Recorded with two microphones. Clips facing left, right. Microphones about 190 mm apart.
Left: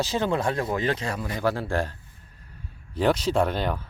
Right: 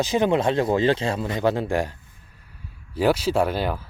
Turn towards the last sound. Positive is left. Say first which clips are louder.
# right 2 dB
turn(degrees=-5)  # may be behind; listen again after turning